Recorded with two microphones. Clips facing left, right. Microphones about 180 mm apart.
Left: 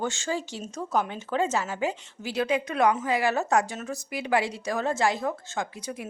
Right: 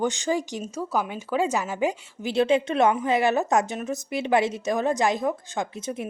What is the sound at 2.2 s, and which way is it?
A woman's voice, 25° right (ahead or behind).